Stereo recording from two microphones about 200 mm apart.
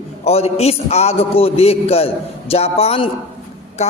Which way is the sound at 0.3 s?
30° left (ahead or behind).